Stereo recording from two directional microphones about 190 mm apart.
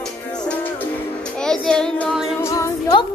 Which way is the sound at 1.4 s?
5° left (ahead or behind).